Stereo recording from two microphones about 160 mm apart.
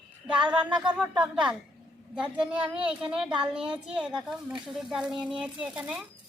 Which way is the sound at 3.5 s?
5° right (ahead or behind).